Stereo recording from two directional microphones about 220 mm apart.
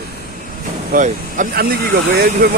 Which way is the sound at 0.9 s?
35° right (ahead or behind).